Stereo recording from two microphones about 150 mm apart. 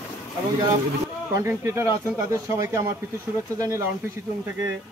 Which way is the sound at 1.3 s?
20° right (ahead or behind).